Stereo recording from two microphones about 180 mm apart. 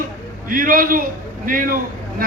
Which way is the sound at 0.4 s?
50° right (ahead or behind).